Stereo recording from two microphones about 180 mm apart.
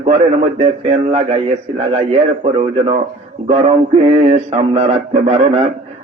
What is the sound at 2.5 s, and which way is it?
Music, 35° right (ahead or behind).